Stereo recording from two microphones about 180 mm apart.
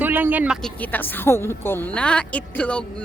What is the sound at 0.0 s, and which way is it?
Speech, 10° right (ahead or behind).